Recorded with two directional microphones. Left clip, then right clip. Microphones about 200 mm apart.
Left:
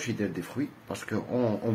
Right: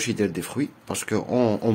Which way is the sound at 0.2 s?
60° right (ahead or behind).